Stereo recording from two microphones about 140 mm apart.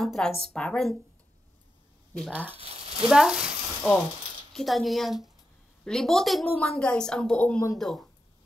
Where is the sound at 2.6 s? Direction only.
45° right (ahead or behind).